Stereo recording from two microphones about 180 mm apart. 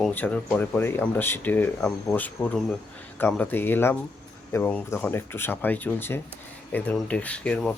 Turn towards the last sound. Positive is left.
turn(degrees=5)  # may be behind; listen again after turning